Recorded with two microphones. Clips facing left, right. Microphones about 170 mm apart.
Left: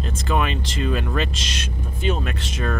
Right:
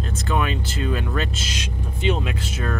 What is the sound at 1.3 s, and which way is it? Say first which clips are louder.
Speech: right 1 dB; 75° left (ahead or behind).